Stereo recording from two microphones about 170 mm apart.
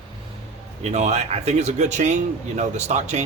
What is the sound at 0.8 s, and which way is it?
Speech, 40° right (ahead or behind).